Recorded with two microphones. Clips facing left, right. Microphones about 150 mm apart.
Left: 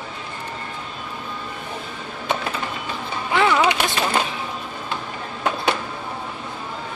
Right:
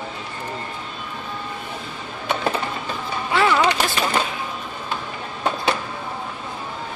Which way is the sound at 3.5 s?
10° left (ahead or behind).